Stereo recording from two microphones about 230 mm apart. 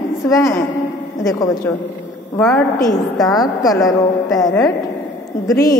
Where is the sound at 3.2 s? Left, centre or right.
Centre.